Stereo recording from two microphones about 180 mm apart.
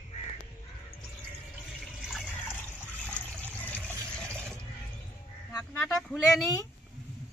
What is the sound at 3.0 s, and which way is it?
Water, 10° left (ahead or behind).